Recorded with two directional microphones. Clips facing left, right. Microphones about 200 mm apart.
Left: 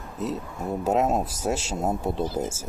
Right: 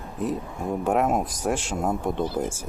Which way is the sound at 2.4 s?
25° left (ahead or behind).